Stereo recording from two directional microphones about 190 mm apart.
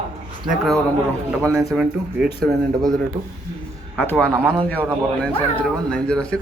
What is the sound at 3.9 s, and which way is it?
Speech, 10° left (ahead or behind).